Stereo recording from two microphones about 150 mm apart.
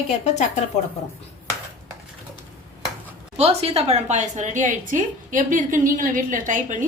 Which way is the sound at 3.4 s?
45° right (ahead or behind).